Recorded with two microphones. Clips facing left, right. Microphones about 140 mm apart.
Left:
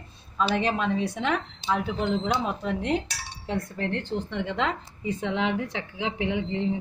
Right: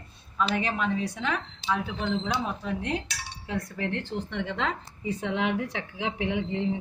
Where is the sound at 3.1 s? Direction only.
30° left (ahead or behind).